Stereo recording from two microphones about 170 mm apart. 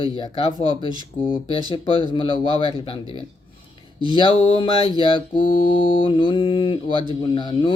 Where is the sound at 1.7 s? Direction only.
30° left (ahead or behind).